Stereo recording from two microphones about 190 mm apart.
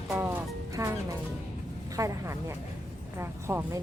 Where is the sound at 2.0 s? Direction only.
15° right (ahead or behind).